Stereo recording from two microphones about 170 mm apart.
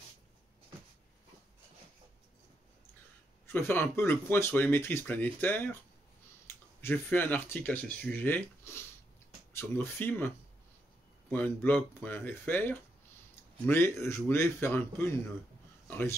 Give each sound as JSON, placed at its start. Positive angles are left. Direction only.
{"t": 3.4, "sound": "speech", "side_deg": 15}